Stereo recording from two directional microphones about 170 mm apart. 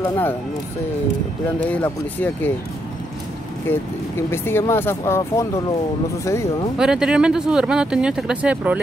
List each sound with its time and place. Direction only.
0.0 s speech: 15° left (ahead or behind)
1.7 s speech: 10° left (ahead or behind)
4.3 s speech: 15° left (ahead or behind)
6.8 s speech: 5° right (ahead or behind)